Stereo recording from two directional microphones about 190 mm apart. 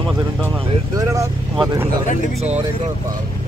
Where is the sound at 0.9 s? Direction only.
15° right (ahead or behind).